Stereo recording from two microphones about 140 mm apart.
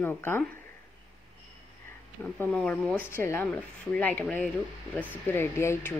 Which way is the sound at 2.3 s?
10° left (ahead or behind).